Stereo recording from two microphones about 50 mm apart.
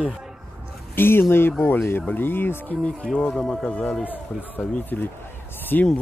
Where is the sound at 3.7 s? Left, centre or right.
Left.